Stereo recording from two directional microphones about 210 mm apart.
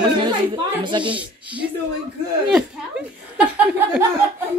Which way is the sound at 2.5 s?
5° right (ahead or behind).